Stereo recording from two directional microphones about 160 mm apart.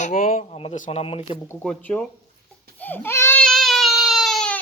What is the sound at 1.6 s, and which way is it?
Speech, 5° left (ahead or behind).